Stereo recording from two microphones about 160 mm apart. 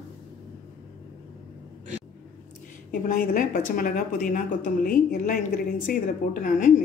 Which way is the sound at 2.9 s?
60° left (ahead or behind).